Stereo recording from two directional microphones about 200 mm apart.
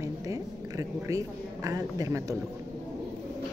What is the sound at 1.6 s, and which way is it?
Speech, 15° right (ahead or behind).